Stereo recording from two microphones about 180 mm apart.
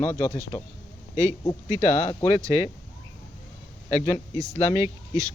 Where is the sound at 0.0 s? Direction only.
15° left (ahead or behind).